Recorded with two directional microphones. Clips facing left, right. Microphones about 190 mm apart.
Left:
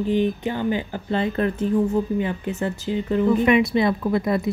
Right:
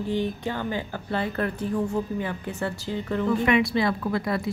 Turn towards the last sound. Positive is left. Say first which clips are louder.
# left 5 dB
turn(degrees=20)  # may be behind; listen again after turning